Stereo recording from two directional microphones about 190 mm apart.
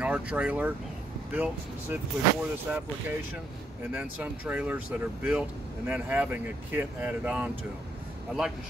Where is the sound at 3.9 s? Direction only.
10° right (ahead or behind).